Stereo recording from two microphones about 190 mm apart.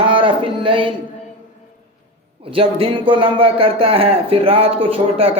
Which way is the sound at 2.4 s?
30° right (ahead or behind).